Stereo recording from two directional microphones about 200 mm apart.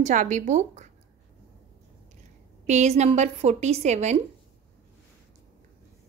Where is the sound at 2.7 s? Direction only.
35° right (ahead or behind).